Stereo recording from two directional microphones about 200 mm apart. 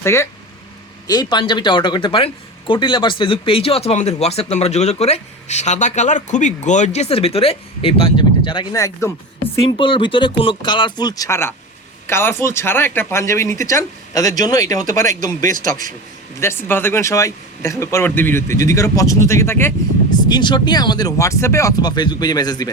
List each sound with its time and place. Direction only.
0.0 s a man's voice: 15° left (ahead or behind)
9.4 s a man's voice: 25° left (ahead or behind)